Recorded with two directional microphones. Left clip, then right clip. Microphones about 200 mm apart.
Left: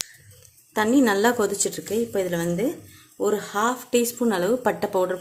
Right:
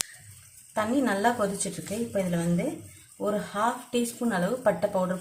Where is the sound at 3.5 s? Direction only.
50° left (ahead or behind).